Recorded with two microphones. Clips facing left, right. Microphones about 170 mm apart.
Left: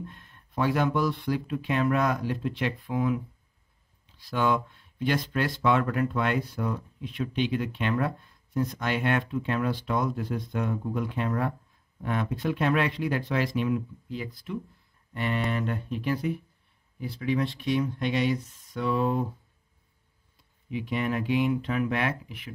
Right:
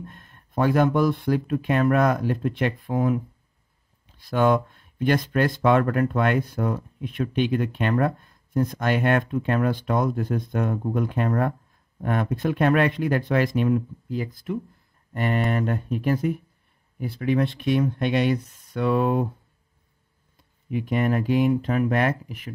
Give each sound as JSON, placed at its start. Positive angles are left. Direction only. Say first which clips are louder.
{"t": 0.0, "sound": "speech", "louder": "even", "side_deg": -50}
{"t": 4.2, "sound": "speech", "louder": "right 6 dB", "side_deg": -50}
{"t": 20.7, "sound": "speech", "louder": "right 5 dB", "side_deg": -45}